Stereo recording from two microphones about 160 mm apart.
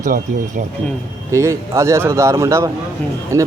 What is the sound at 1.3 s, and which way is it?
A man's voice, 20° right (ahead or behind).